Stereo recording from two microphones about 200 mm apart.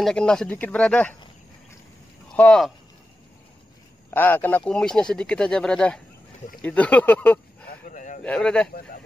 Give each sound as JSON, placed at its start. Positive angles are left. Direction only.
{"t": 0.0, "sound": "speech", "side_deg": 5}
{"t": 2.2, "sound": "speech", "side_deg": 5}
{"t": 4.1, "sound": "speech", "side_deg": 10}
{"t": 7.6, "sound": "a sound", "side_deg": 40}
{"t": 8.2, "sound": "speech", "side_deg": 5}